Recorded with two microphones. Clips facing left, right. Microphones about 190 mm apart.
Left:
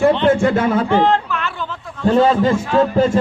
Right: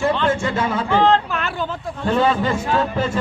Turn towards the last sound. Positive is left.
turn(degrees=40)  # may be behind; listen again after turning